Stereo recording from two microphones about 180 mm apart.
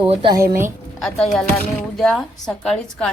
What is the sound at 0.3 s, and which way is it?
Speech, 15° right (ahead or behind).